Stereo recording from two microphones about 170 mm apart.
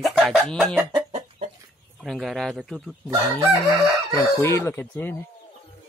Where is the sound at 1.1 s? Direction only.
40° right (ahead or behind).